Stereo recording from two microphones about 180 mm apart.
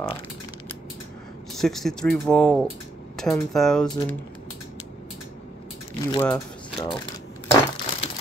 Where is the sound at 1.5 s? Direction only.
Centre (ahead or behind).